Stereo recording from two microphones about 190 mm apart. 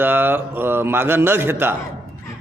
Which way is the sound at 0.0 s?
10° right (ahead or behind).